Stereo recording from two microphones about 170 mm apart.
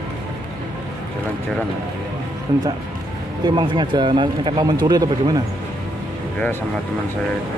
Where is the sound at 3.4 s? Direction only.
25° right (ahead or behind).